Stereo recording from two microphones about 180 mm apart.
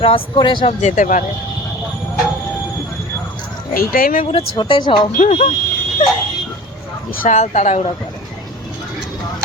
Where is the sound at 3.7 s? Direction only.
55° left (ahead or behind).